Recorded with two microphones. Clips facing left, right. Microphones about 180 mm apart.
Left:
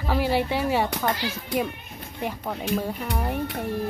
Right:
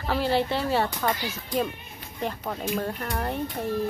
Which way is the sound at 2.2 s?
10° left (ahead or behind).